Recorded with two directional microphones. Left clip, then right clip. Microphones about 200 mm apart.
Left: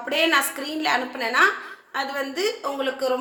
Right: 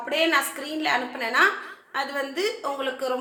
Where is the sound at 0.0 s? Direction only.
10° left (ahead or behind).